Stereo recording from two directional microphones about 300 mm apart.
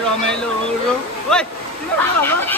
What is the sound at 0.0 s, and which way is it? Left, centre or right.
Speech, centre.